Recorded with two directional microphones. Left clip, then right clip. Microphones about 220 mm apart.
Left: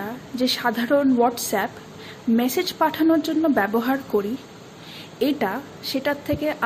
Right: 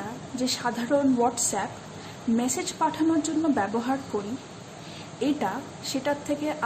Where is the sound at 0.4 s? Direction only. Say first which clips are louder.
Left 6 dB; 20° left (ahead or behind).